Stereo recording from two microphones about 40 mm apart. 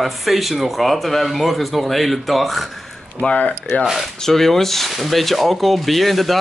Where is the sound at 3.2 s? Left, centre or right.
Left.